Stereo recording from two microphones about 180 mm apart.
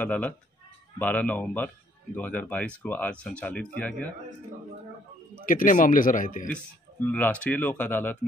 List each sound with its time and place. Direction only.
0.0 s speech: 10° left (ahead or behind)
5.4 s a man's voice: 50° left (ahead or behind)
7.1 s speech: 10° left (ahead or behind)